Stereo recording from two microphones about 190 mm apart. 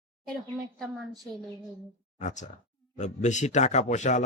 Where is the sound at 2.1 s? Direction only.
40° left (ahead or behind).